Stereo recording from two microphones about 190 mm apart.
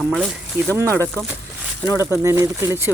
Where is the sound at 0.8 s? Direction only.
15° right (ahead or behind).